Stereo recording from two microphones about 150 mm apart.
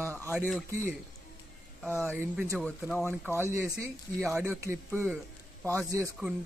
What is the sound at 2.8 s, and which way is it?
Speech, centre (ahead or behind).